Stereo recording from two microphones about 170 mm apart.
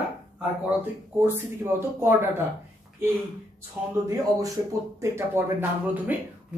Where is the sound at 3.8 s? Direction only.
15° right (ahead or behind).